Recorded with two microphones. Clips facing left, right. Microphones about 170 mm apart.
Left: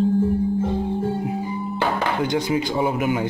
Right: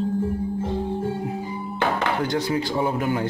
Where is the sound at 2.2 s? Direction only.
20° left (ahead or behind).